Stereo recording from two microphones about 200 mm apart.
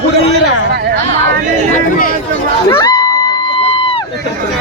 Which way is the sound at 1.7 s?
45° left (ahead or behind).